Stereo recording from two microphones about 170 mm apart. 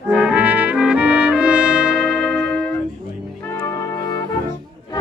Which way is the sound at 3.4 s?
15° left (ahead or behind).